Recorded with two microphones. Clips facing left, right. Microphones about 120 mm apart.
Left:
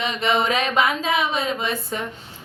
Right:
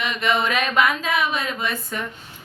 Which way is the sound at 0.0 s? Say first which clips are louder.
Left 1 dB; 20° left (ahead or behind).